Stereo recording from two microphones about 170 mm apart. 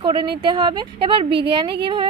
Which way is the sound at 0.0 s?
30° right (ahead or behind).